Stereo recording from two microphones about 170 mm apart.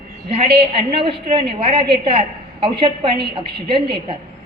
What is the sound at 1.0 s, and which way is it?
A woman's voice, 35° right (ahead or behind).